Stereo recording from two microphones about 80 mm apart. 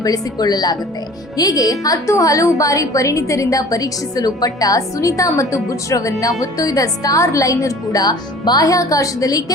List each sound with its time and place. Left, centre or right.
0.0 s a woman's voice: left